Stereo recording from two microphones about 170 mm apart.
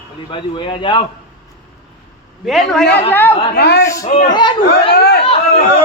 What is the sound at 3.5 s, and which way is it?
Speech, 75° left (ahead or behind).